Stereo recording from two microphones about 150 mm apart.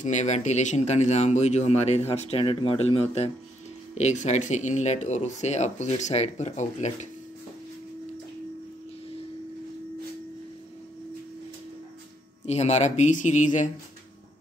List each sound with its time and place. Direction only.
0.0 s speech: 50° left (ahead or behind)
12.4 s speech: 45° left (ahead or behind)